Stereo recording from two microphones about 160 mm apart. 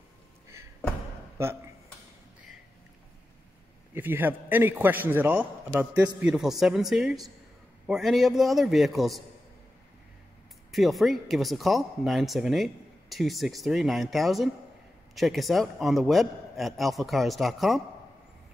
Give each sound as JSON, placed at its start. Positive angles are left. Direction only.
{"t": 1.4, "sound": "a man's voice", "side_deg": -15}
{"t": 3.9, "sound": "a man's voice", "side_deg": -10}
{"t": 10.7, "sound": "speech", "side_deg": 0}